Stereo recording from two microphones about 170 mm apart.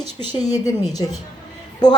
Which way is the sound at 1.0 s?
25° left (ahead or behind).